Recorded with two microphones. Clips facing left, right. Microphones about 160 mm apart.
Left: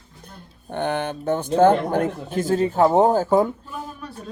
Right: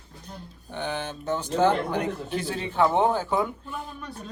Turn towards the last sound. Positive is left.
turn(degrees=45)  # may be behind; listen again after turning